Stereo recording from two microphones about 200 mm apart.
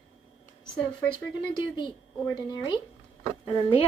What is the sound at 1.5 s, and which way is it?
Speech, 25° left (ahead or behind).